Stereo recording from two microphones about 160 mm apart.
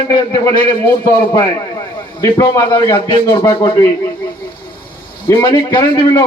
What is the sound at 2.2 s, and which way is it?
Speech, 20° left (ahead or behind).